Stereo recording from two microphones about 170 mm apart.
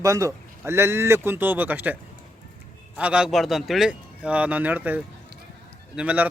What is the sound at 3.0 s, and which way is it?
Speech, 5° right (ahead or behind).